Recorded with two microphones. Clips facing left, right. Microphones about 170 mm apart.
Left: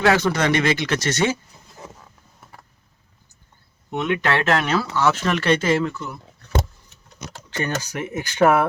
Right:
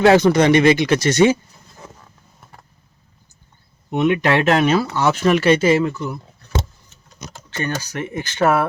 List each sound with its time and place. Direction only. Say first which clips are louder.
0.2 s speech: right 7 dB; 20° right (ahead or behind)
3.9 s speech: right 5 dB; 15° right (ahead or behind)
7.6 s speech: right 1 dB; 15° left (ahead or behind)